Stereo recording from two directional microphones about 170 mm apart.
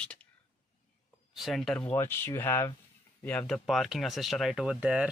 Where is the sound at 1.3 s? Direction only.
Centre (ahead or behind).